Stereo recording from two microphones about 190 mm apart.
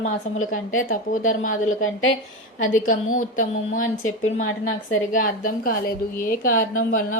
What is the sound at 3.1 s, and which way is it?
Speech, 40° left (ahead or behind).